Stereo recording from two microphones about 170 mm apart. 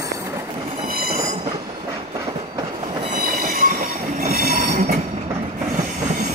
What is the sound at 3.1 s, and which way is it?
Train, 55° right (ahead or behind).